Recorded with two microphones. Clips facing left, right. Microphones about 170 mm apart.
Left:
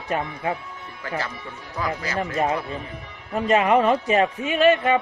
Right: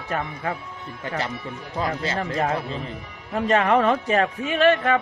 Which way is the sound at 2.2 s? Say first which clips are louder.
Left 3 dB; 10° left (ahead or behind).